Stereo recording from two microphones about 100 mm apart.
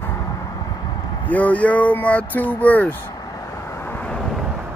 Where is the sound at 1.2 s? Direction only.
15° left (ahead or behind).